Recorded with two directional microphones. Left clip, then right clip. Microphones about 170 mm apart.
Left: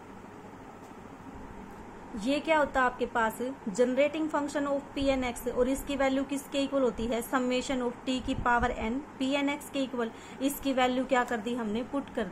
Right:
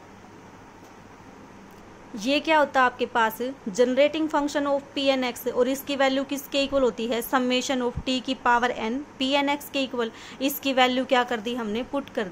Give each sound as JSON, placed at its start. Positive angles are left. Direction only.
{"t": 2.1, "sound": "a woman's voice", "side_deg": -30}